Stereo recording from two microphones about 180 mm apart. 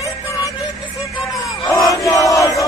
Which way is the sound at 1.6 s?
20° left (ahead or behind).